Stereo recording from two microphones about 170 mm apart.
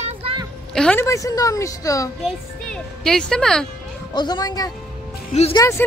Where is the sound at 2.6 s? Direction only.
5° left (ahead or behind).